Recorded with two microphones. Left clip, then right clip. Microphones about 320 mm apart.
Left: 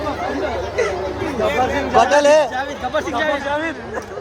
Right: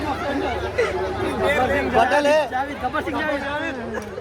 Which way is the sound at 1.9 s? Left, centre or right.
Left.